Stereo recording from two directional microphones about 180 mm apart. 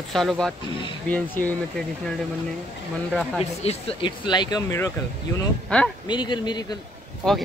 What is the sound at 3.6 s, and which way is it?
Speech, 35° left (ahead or behind).